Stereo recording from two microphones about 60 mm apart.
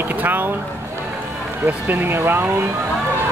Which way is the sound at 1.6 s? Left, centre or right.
Right.